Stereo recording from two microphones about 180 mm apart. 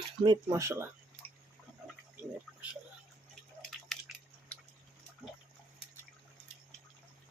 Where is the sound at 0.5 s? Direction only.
15° right (ahead or behind).